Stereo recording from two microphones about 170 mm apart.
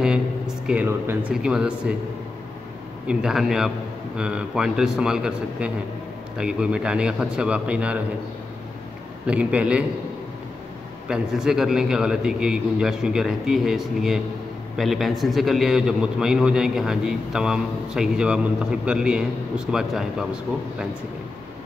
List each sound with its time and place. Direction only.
0.0 s a man's voice: 5° right (ahead or behind)
3.1 s a man's voice: 5° right (ahead or behind)
9.2 s a man's voice: 5° right (ahead or behind)
11.1 s a man's voice: 5° right (ahead or behind)